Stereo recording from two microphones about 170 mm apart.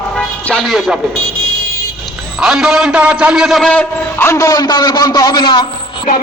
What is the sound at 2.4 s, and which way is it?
A man's voice, 5° right (ahead or behind).